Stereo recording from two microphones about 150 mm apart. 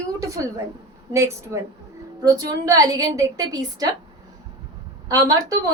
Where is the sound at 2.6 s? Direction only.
25° right (ahead or behind).